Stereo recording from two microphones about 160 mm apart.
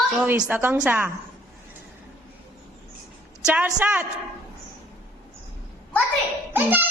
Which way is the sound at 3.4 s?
5° right (ahead or behind).